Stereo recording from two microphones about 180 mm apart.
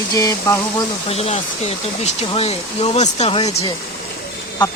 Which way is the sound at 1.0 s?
35° left (ahead or behind).